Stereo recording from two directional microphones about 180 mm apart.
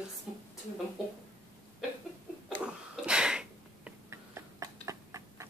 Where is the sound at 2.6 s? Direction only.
5° right (ahead or behind).